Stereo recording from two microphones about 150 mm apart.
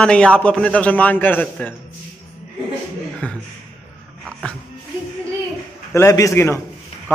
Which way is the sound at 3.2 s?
10° left (ahead or behind).